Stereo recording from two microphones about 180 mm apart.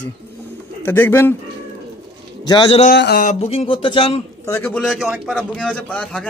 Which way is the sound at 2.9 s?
65° left (ahead or behind).